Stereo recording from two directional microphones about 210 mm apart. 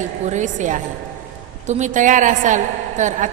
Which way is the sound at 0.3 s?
35° right (ahead or behind).